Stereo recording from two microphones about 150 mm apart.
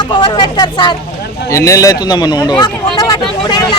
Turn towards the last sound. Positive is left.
turn(degrees=30)  # may be behind; listen again after turning